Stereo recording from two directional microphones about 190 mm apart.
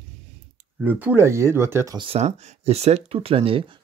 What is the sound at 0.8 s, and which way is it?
Speech, 10° right (ahead or behind).